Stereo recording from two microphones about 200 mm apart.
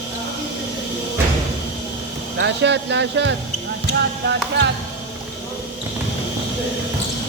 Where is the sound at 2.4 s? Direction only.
60° right (ahead or behind).